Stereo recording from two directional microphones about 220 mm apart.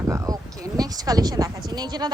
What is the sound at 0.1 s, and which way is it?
A woman's voice, 15° right (ahead or behind).